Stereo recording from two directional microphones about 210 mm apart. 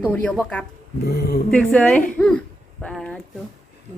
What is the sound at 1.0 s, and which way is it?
Speech, 50° left (ahead or behind).